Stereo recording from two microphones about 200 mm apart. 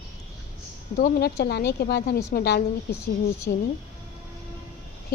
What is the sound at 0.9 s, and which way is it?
Speech, 50° left (ahead or behind).